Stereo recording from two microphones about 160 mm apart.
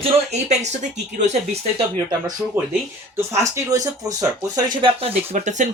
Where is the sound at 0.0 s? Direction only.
45° right (ahead or behind).